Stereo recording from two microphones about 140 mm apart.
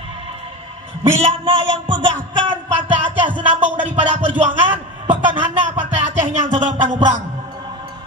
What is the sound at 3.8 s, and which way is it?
Speech, 65° right (ahead or behind).